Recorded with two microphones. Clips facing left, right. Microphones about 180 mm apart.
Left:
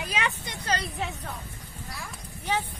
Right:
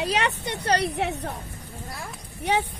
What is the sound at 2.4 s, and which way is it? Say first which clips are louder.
Speech: right 5 dB; 70° right (ahead or behind).